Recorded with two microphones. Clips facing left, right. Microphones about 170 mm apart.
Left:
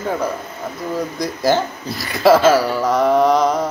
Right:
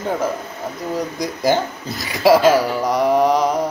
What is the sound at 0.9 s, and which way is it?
Speech, 15° right (ahead or behind).